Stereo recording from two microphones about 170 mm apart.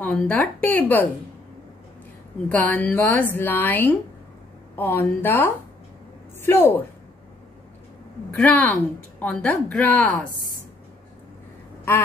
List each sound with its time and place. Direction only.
0.0 s a woman's voice: 5° left (ahead or behind)
2.5 s a woman's voice: 10° left (ahead or behind)
8.4 s a woman's voice: 10° left (ahead or behind)